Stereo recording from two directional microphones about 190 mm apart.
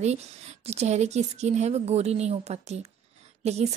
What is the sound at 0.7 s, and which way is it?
Speech, 35° right (ahead or behind).